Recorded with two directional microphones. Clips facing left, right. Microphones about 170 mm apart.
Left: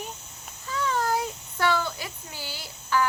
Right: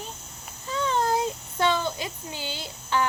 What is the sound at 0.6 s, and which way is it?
A child's voice, 25° right (ahead or behind).